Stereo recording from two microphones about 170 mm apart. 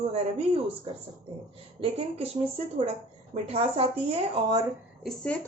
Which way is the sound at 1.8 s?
35° right (ahead or behind).